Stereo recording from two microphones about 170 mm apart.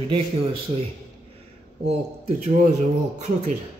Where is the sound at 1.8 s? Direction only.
40° right (ahead or behind).